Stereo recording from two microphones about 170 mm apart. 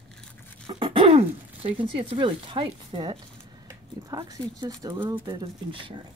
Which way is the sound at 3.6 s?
20° right (ahead or behind).